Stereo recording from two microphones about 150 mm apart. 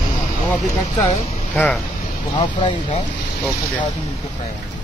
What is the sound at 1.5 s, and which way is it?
Speech, 10° left (ahead or behind).